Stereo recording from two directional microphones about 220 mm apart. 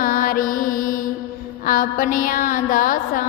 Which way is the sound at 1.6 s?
40° left (ahead or behind).